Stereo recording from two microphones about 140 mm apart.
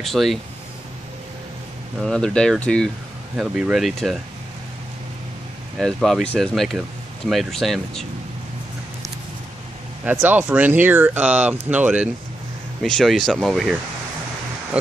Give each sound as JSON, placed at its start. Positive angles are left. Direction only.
{"t": 0.0, "sound": "speech", "side_deg": 0}
{"t": 2.0, "sound": "speech", "side_deg": 5}
{"t": 5.8, "sound": "speech", "side_deg": 5}
{"t": 10.0, "sound": "speech", "side_deg": -10}
{"t": 12.8, "sound": "speech", "side_deg": 5}